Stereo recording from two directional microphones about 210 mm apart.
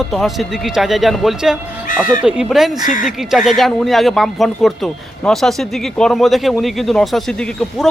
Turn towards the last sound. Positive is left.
turn(degrees=5)  # may be behind; listen again after turning